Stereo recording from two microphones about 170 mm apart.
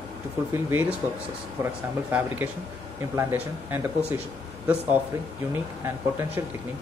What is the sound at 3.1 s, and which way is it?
Speech, 10° right (ahead or behind).